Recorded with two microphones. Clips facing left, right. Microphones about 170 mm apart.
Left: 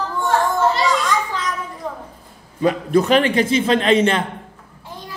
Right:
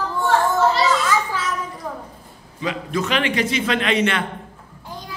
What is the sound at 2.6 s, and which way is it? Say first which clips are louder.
A man's voice: left 8 dB; 45° left (ahead or behind).